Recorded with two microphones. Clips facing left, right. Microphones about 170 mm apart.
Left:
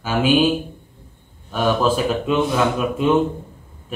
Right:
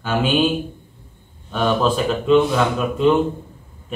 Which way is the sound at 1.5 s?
5° left (ahead or behind).